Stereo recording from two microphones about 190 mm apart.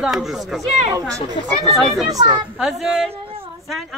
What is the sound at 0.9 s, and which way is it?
Speech, 15° right (ahead or behind).